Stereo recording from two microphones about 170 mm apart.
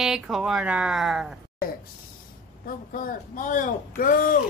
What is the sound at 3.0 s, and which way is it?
Speech, 50° left (ahead or behind).